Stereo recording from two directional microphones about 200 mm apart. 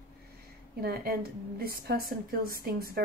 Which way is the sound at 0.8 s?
50° right (ahead or behind).